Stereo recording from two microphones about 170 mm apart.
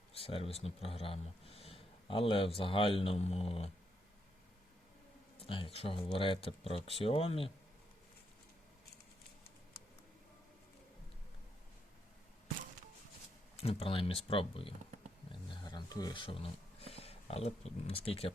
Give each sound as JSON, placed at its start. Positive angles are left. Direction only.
{"t": 0.2, "sound": "speech", "side_deg": 35}
{"t": 5.4, "sound": "speech", "side_deg": 30}
{"t": 13.6, "sound": "speech", "side_deg": 35}
{"t": 15.3, "sound": "a sound", "side_deg": 25}